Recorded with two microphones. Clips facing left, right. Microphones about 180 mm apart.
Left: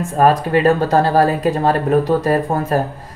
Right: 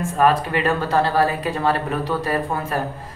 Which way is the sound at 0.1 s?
40° left (ahead or behind).